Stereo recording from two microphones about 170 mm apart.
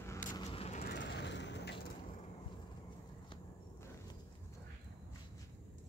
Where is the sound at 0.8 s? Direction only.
90° left.